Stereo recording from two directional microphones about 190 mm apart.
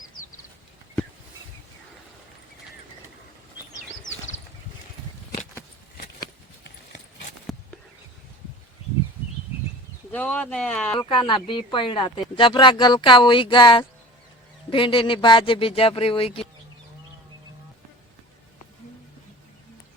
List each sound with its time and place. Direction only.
10.1 s speech: 5° left (ahead or behind)
11.1 s speech: 25° left (ahead or behind)